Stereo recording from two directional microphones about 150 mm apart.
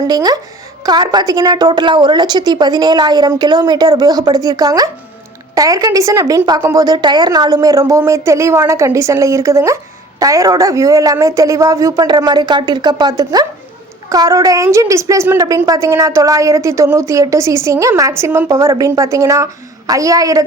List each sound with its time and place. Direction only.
0.1 s a woman's voice: 25° right (ahead or behind)